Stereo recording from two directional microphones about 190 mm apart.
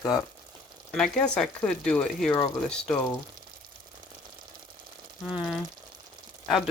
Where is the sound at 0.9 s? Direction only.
Centre (ahead or behind).